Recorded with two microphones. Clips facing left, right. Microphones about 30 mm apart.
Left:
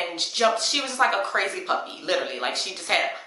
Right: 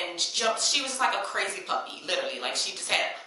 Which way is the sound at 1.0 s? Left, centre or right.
Centre.